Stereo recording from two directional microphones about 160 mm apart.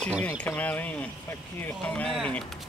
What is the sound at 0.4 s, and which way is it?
Speech, 10° left (ahead or behind).